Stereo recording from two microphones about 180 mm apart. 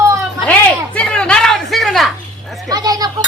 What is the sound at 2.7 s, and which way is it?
Speech, 20° right (ahead or behind).